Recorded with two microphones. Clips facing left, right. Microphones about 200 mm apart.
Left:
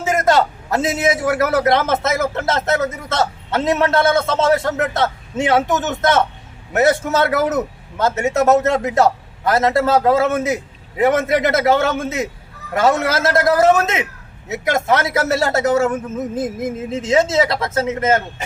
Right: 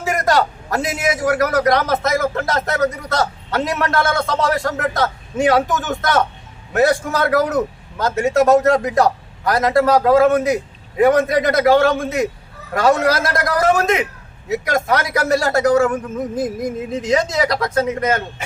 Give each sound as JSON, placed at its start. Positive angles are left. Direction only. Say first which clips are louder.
{"t": 0.0, "sound": "a man's voice", "louder": "left 2 dB", "side_deg": 20}